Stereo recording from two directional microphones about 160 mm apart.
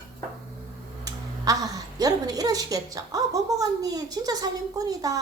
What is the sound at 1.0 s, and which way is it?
A woman's voice, 20° right (ahead or behind).